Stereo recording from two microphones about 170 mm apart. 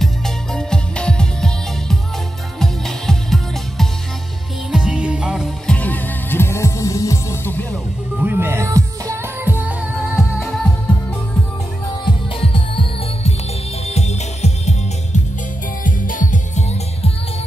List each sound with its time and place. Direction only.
0.0 s music: 5° left (ahead or behind)
5.8 s music: 10° left (ahead or behind)
8.2 s music: 10° right (ahead or behind)
12.0 s music: 30° left (ahead or behind)
15.8 s music: 50° left (ahead or behind)